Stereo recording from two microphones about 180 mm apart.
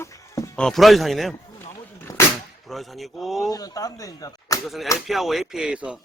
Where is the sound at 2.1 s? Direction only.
20° left (ahead or behind).